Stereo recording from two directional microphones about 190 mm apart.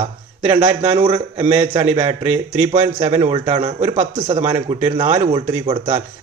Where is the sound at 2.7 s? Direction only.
35° right (ahead or behind).